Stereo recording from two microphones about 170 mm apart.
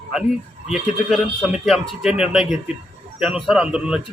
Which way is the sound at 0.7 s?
Centre (ahead or behind).